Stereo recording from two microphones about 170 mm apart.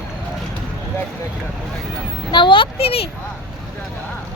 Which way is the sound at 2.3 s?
30° left (ahead or behind).